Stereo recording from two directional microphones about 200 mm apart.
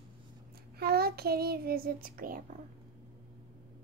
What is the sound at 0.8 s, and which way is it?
A child's voice, 50° right (ahead or behind).